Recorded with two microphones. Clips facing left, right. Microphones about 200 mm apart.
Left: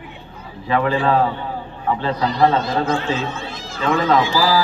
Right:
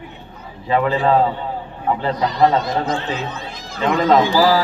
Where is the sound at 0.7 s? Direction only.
20° right (ahead or behind).